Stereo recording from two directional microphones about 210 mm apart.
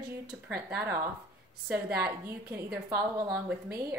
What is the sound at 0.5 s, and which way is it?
Speech, 15° right (ahead or behind).